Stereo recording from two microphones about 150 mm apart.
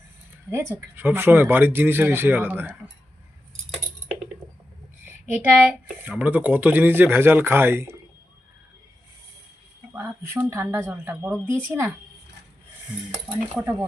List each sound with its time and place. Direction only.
0.5 s speech: 20° right (ahead or behind)
5.0 s speech: 10° right (ahead or behind)
9.9 s speech: 15° right (ahead or behind)